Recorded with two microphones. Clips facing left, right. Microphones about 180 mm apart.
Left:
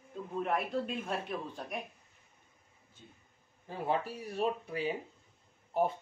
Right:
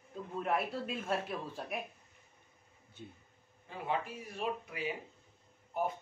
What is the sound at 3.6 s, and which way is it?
Speech, 35° left (ahead or behind).